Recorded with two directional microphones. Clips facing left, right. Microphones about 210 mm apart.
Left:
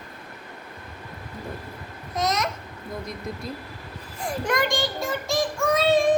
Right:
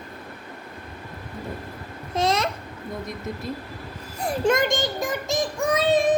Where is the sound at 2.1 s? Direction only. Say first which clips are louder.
Right 3 dB; 30° right (ahead or behind).